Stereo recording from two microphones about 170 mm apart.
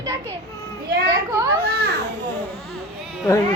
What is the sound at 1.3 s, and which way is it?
Speech, 20° right (ahead or behind).